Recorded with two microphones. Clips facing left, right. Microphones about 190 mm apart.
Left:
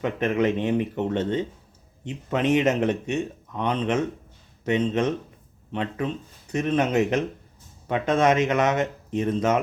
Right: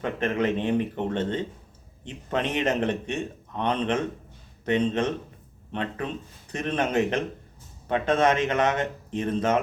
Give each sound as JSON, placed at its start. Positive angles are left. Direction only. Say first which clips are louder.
{"t": 0.0, "sound": "speech", "louder": "left 3 dB", "side_deg": 15}